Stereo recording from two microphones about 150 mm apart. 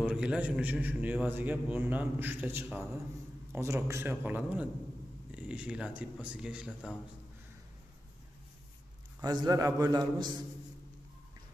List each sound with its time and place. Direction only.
0.0 s a man's voice: 5° right (ahead or behind)
9.2 s a man's voice: 25° right (ahead or behind)